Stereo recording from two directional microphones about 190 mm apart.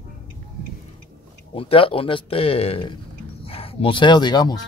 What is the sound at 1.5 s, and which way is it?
Speech, 30° left (ahead or behind).